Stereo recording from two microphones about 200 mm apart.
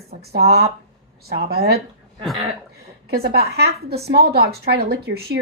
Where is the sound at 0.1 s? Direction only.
50° right (ahead or behind).